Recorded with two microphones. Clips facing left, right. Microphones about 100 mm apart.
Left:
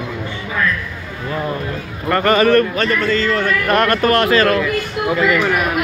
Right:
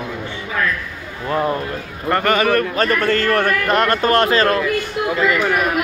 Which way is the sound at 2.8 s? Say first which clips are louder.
Even; 50° right (ahead or behind).